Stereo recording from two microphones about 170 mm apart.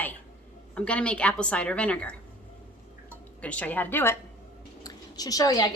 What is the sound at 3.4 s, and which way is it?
A woman's voice, 10° left (ahead or behind).